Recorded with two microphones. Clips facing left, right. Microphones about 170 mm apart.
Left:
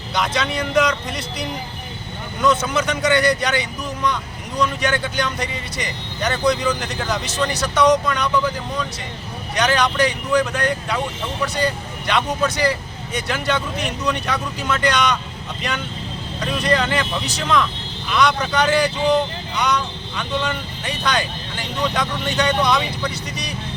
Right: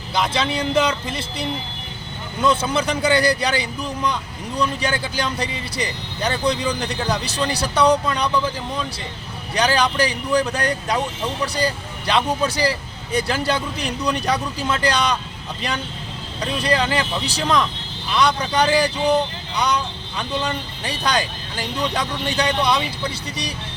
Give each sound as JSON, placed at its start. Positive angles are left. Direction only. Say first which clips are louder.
{"t": 0.1, "sound": "speech", "louder": "right 1 dB", "side_deg": -30}
{"t": 9.6, "sound": "speech", "louder": "left 1 dB", "side_deg": -35}
{"t": 16.4, "sound": "speech", "louder": "left 1 dB", "side_deg": -30}